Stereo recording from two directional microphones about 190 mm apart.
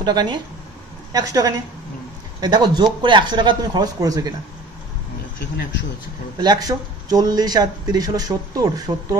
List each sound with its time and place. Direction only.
0.0 s speech: 25° right (ahead or behind)
6.3 s speech: 20° right (ahead or behind)